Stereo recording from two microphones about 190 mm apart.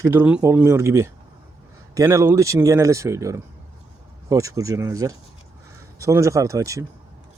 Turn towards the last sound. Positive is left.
turn(degrees=-15)  # may be behind; listen again after turning